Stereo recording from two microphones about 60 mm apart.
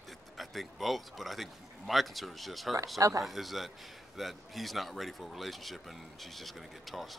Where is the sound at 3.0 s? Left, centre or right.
Right.